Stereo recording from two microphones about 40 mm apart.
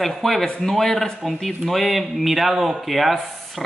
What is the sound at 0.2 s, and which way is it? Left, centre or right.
Speech, centre.